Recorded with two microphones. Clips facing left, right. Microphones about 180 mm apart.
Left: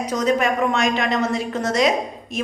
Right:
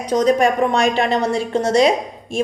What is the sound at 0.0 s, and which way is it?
A woman's voice, 30° right (ahead or behind).